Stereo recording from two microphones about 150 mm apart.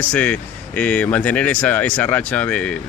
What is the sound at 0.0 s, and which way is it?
Speech, 10° left (ahead or behind).